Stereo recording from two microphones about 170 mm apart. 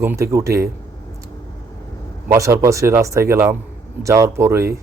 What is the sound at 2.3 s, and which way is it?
Speech, 15° right (ahead or behind).